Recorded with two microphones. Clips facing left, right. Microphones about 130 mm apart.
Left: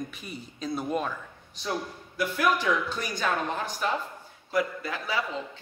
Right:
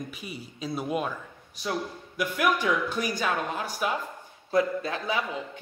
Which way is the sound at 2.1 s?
15° right (ahead or behind).